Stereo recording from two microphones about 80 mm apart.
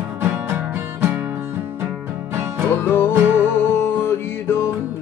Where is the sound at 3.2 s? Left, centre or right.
Right.